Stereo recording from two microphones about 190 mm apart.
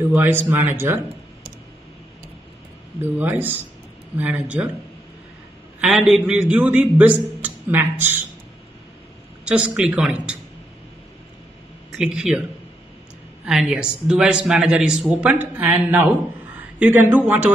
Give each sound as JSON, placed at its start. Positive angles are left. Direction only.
{"t": 0.1, "sound": "speech", "side_deg": -10}
{"t": 3.0, "sound": "a man's voice", "side_deg": -10}
{"t": 5.8, "sound": "a man's voice", "side_deg": -5}
{"t": 9.4, "sound": "speech", "side_deg": -5}
{"t": 12.0, "sound": "speech", "side_deg": -5}
{"t": 13.5, "sound": "speech", "side_deg": -5}